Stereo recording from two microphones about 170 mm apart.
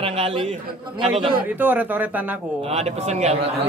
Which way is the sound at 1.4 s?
10° right (ahead or behind).